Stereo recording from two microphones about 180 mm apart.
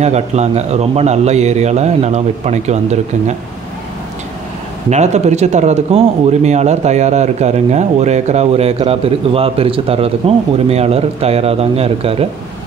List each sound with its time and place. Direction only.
0.0 s speech: 40° right (ahead or behind)
4.8 s speech: 40° right (ahead or behind)